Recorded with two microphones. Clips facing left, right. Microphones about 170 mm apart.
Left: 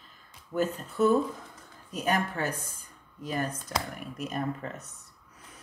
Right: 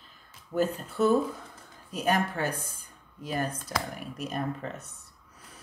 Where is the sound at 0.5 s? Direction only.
35° right (ahead or behind).